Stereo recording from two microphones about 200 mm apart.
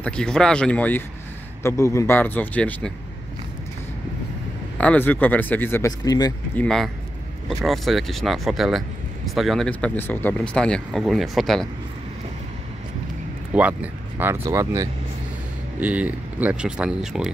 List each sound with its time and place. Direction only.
0.0 s speech: 5° left (ahead or behind)
4.7 s speech: 5° left (ahead or behind)
6.6 s speech: centre (ahead or behind)
13.5 s speech: 5° right (ahead or behind)